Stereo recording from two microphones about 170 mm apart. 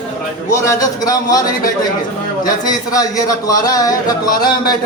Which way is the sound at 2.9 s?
20° left (ahead or behind).